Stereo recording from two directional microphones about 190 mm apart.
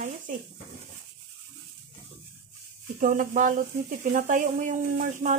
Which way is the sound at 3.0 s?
45° right (ahead or behind).